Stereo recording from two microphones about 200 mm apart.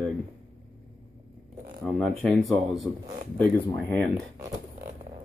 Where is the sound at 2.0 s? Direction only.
5° left (ahead or behind).